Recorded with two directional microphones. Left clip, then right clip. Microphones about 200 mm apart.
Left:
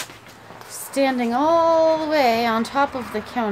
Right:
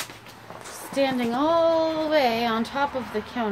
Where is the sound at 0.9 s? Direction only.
25° left (ahead or behind).